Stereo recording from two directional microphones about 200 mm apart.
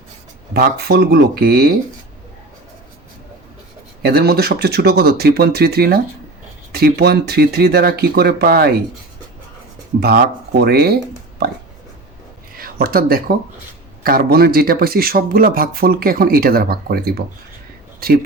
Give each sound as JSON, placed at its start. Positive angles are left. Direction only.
{"t": 0.5, "sound": "speech", "side_deg": -55}
{"t": 4.0, "sound": "speech", "side_deg": -50}
{"t": 10.0, "sound": "speech", "side_deg": -50}
{"t": 12.5, "sound": "speech", "side_deg": -45}